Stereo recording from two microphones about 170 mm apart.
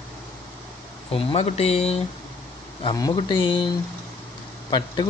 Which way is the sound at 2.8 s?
25° left (ahead or behind).